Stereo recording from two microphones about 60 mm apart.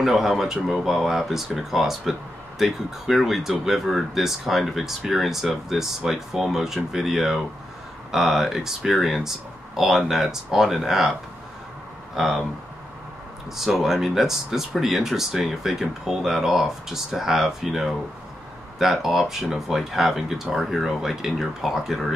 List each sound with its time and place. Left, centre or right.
0.0 s speech: centre
12.2 s speech: centre
13.6 s speech: centre